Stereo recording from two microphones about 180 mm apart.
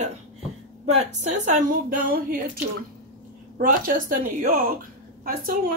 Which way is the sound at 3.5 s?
50° right (ahead or behind).